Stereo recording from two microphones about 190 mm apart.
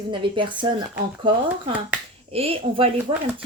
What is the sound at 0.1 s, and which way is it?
A woman's voice, 25° right (ahead or behind).